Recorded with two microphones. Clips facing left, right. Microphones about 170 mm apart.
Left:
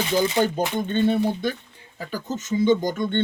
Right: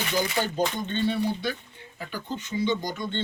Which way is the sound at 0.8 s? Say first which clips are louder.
Left 5 dB; 50° left (ahead or behind).